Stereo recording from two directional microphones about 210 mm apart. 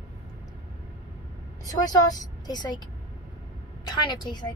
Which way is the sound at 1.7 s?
15° left (ahead or behind).